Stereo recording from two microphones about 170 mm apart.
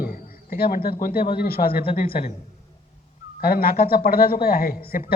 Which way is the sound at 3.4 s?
65° left (ahead or behind).